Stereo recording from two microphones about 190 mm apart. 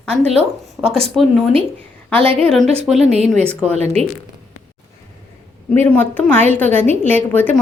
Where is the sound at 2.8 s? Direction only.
Centre (ahead or behind).